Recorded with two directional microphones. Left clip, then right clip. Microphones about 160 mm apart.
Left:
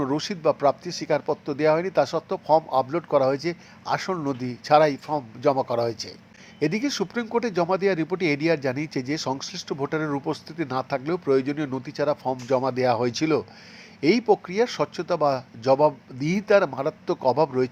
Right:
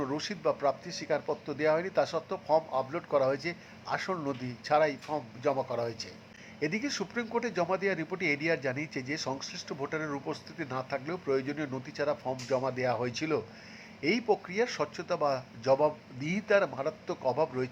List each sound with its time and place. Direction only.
0.0 s speech: 30° left (ahead or behind)